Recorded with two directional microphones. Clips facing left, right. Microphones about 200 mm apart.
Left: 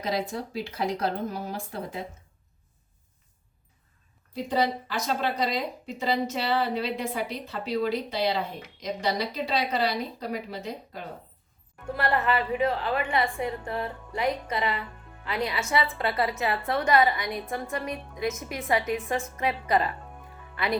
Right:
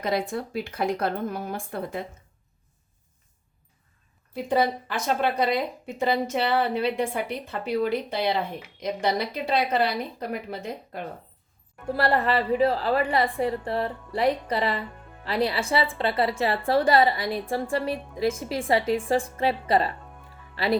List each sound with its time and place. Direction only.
0.0 s a woman's voice: 55° right (ahead or behind)
4.4 s a woman's voice: 55° right (ahead or behind)
11.9 s a woman's voice: 35° right (ahead or behind)